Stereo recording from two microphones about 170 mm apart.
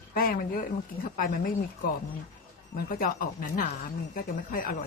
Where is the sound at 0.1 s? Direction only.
60° left (ahead or behind).